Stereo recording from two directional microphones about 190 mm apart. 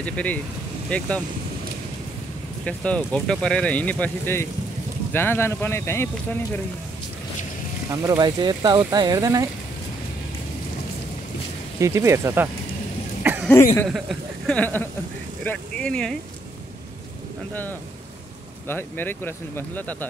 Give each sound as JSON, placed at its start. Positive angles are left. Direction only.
{"t": 0.0, "sound": "speech", "side_deg": 5}
{"t": 2.6, "sound": "speech", "side_deg": 5}
{"t": 7.9, "sound": "speech", "side_deg": -15}
{"t": 11.8, "sound": "speech", "side_deg": -15}
{"t": 13.2, "sound": "cough", "side_deg": -10}
{"t": 13.8, "sound": "speech", "side_deg": 0}
{"t": 18.7, "sound": "speech", "side_deg": 10}